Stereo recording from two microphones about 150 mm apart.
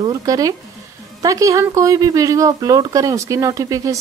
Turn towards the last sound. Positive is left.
turn(degrees=-20)  # may be behind; listen again after turning